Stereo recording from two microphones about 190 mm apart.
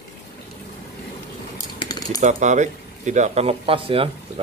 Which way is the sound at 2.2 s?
40° right (ahead or behind).